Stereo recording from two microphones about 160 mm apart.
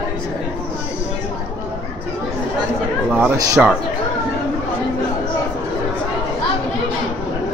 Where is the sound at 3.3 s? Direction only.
25° right (ahead or behind).